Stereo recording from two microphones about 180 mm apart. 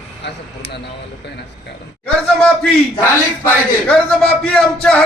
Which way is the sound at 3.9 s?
5° left (ahead or behind).